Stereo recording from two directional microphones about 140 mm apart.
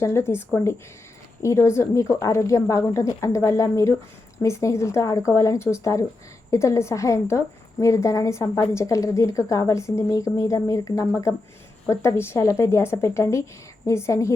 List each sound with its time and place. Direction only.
0.0 s speech: 20° left (ahead or behind)